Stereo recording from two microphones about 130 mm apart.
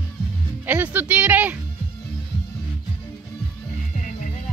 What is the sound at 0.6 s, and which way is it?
Music, 15° right (ahead or behind).